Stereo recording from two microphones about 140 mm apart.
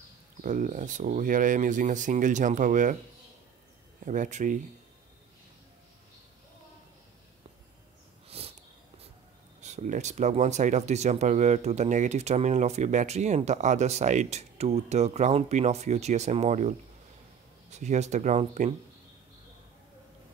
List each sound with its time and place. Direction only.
0.4 s speech: 70° right (ahead or behind)
4.0 s speech: 65° right (ahead or behind)
8.3 s dog: 45° right (ahead or behind)
9.6 s speech: 55° right (ahead or behind)